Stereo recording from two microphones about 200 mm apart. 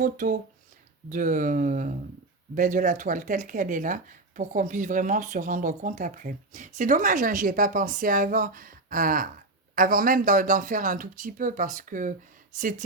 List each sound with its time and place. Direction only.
0.0 s speech: 45° right (ahead or behind)